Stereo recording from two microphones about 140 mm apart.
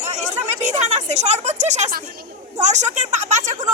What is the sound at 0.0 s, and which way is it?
A woman's voice, 55° right (ahead or behind).